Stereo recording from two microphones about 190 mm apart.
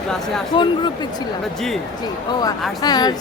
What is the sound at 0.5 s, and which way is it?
Speech, 25° left (ahead or behind).